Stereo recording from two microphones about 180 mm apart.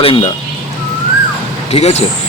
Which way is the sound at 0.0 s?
30° left (ahead or behind).